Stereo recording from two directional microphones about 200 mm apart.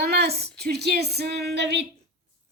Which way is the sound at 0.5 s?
55° right (ahead or behind).